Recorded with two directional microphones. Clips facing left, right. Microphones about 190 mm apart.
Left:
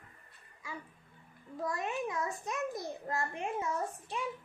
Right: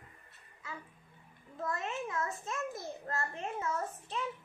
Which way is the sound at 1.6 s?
15° left (ahead or behind).